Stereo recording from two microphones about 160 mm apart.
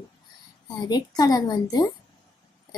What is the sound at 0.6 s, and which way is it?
A woman's voice, 25° left (ahead or behind).